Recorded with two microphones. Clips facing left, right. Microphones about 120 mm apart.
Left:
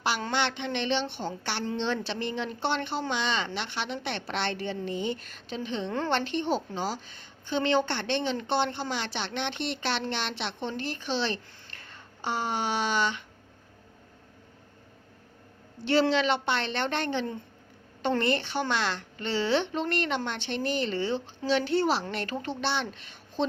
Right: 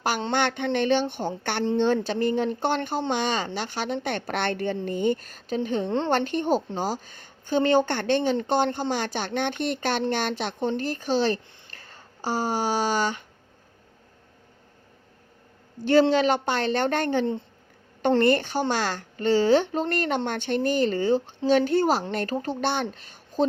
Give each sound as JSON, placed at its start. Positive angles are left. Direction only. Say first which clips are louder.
{"t": 0.3, "sound": "speech", "louder": "right 5 dB", "side_deg": -50}
{"t": 15.8, "sound": "speech", "louder": "right 5 dB", "side_deg": -45}